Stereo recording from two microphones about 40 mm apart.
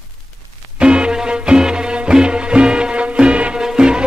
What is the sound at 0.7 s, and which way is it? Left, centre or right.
Music, right.